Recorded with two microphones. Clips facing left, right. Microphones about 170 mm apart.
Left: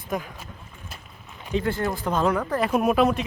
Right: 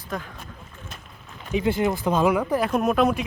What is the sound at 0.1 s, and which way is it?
Speech, 10° left (ahead or behind).